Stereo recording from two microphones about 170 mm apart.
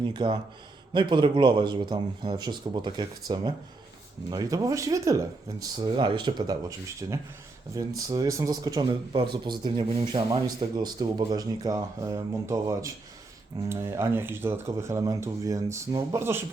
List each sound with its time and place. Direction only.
0.0 s speech: 30° right (ahead or behind)